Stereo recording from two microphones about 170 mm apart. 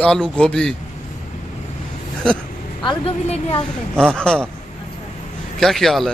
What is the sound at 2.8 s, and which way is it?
Speech, 35° left (ahead or behind).